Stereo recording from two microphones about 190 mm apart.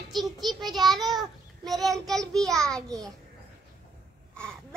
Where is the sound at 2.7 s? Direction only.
20° right (ahead or behind).